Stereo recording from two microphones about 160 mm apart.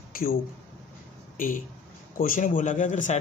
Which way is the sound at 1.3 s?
55° left (ahead or behind).